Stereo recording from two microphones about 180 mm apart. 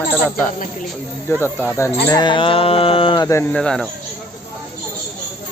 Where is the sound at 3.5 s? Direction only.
5° left (ahead or behind).